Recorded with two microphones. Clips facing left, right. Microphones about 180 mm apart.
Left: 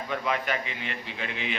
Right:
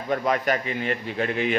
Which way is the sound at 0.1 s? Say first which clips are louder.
Right 7 dB; 45° right (ahead or behind).